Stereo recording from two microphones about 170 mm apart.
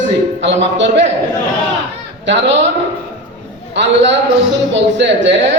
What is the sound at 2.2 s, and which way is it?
Speech, 90° right.